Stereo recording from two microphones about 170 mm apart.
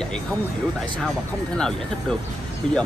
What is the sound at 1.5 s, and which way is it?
Speech, 5° left (ahead or behind).